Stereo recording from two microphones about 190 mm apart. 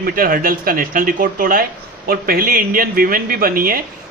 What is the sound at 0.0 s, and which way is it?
A man's voice, 50° right (ahead or behind).